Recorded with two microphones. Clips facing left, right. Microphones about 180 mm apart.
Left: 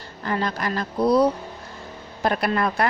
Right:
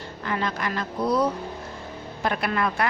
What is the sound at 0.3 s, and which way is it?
A woman's voice, 35° left (ahead or behind).